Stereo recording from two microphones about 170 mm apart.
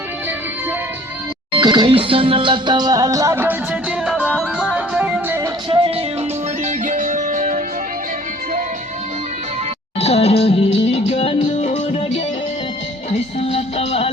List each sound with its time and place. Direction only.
1.5 s music: 25° right (ahead or behind); by 5.4 s 5° right (ahead or behind)
5.4 s music: 30° right (ahead or behind)
6.7 s music: 50° right (ahead or behind)
10.0 s music: 35° left (ahead or behind)